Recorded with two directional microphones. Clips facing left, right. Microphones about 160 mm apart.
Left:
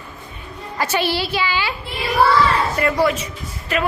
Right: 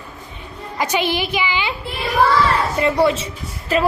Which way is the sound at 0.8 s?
15° right (ahead or behind).